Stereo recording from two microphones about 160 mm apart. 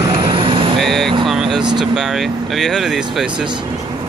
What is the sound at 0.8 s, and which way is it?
Vehicle, centre (ahead or behind).